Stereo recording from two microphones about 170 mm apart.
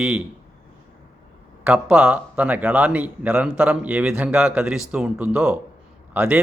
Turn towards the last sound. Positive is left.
turn(degrees=-10)  # may be behind; listen again after turning